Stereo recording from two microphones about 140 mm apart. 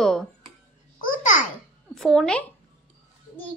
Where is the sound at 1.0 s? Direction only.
75° left (ahead or behind).